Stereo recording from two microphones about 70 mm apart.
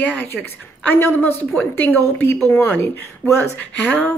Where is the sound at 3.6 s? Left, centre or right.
Centre.